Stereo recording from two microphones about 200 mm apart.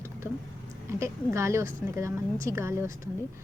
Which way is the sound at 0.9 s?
15° right (ahead or behind).